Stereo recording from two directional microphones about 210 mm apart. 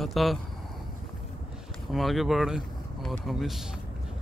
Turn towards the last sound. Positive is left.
turn(degrees=0)  # may be behind; listen again after turning